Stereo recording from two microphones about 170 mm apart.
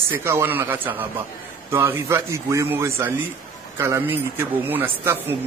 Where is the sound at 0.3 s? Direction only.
15° right (ahead or behind).